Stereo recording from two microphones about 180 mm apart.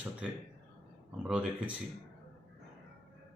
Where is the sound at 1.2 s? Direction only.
5° right (ahead or behind).